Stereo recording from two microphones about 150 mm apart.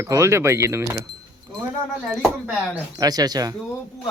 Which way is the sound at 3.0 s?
25° right (ahead or behind).